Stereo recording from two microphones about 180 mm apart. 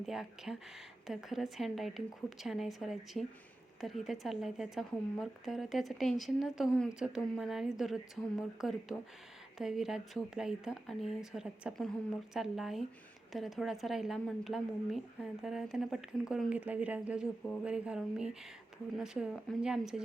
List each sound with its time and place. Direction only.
0.0 s a woman's voice: centre (ahead or behind)